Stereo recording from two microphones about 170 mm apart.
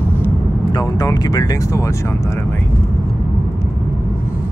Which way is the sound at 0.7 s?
20° left (ahead or behind).